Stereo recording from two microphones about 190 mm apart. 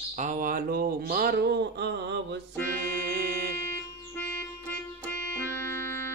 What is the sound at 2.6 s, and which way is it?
Music, 50° right (ahead or behind).